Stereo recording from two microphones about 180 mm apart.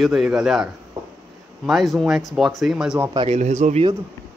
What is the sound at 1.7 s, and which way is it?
Speech, centre (ahead or behind).